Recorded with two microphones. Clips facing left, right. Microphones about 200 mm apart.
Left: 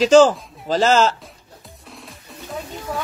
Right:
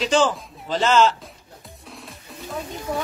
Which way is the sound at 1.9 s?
Centre (ahead or behind).